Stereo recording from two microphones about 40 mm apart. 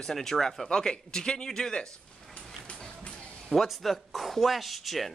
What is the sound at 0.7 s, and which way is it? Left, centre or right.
A man's voice, centre.